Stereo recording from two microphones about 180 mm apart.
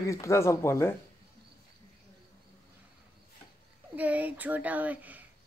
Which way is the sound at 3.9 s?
10° right (ahead or behind).